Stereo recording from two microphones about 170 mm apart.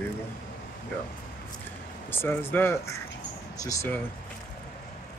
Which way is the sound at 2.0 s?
15° left (ahead or behind).